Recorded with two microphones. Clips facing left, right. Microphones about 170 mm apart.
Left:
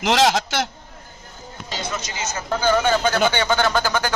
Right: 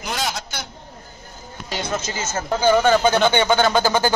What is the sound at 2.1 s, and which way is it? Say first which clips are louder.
Speech: right 2 dB; 50° right (ahead or behind).